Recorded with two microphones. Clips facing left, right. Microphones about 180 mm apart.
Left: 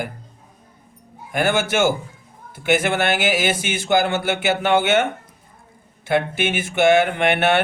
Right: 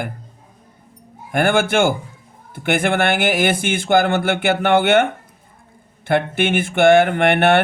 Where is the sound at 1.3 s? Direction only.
55° right (ahead or behind).